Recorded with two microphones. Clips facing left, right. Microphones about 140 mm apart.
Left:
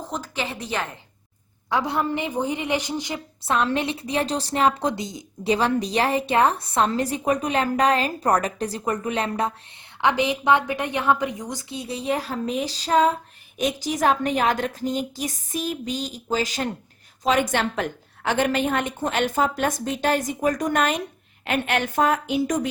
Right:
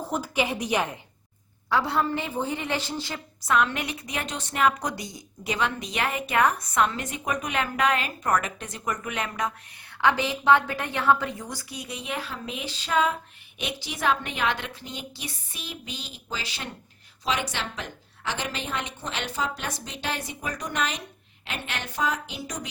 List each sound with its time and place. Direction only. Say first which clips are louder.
0.0 s a woman's voice: right 2 dB; 10° right (ahead or behind)
1.7 s a woman's voice: left 1 dB; 15° left (ahead or behind)
3.4 s a woman's voice: left 2 dB; 30° left (ahead or behind)
10.0 s a woman's voice: left 3 dB; 20° left (ahead or behind); by 22.7 s 50° left (ahead or behind)